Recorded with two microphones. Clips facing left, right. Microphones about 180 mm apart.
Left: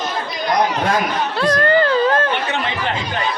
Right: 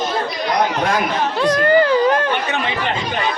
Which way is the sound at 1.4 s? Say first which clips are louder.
Right 1 dB; 15° right (ahead or behind).